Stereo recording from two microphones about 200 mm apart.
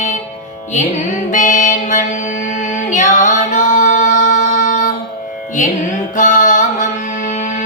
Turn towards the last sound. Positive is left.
turn(degrees=35)  # may be behind; listen again after turning